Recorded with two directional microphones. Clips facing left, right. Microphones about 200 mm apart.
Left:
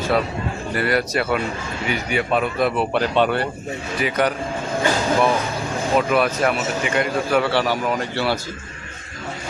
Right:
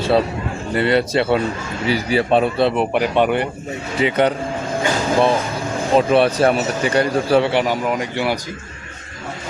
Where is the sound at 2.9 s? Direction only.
15° right (ahead or behind).